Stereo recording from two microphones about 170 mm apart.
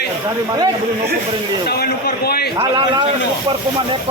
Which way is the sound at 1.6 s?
70° left (ahead or behind).